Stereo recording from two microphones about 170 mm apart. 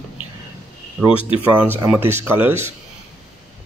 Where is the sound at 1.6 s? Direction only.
10° right (ahead or behind).